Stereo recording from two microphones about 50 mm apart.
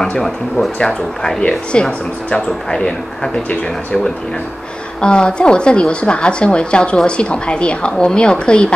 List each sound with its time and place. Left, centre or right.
0.7 s speech: centre
1.4 s a woman's voice: left
5.0 s a woman's voice: centre